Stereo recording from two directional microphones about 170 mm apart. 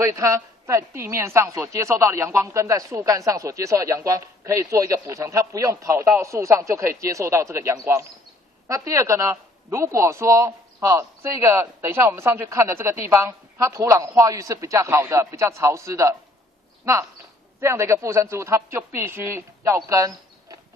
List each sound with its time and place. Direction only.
0.0 s a woman's voice: 15° right (ahead or behind)
17.6 s a woman's voice: 15° right (ahead or behind)